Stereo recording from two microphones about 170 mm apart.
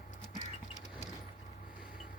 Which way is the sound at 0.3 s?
45° left (ahead or behind).